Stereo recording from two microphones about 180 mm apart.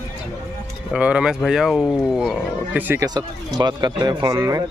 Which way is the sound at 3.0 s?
25° right (ahead or behind).